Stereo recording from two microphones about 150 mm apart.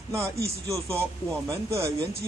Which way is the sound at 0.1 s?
20° right (ahead or behind).